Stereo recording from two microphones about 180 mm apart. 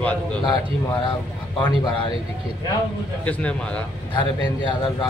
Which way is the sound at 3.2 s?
5° left (ahead or behind).